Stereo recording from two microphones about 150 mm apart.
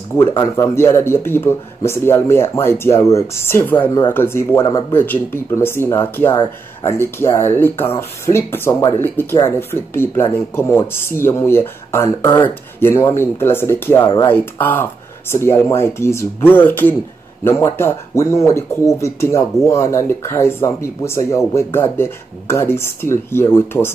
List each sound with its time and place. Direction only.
0.6 s speech: 15° left (ahead or behind)